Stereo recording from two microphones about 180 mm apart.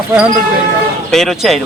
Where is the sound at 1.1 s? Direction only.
Centre (ahead or behind).